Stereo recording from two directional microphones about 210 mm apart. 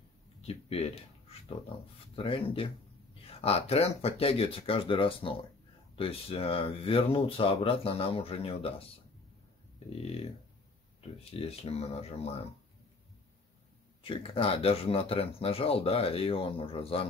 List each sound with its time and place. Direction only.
0.5 s speech: 30° left (ahead or behind)
2.1 s speech: 25° left (ahead or behind)
11.0 s speech: 30° left (ahead or behind)
14.0 s speech: 25° left (ahead or behind)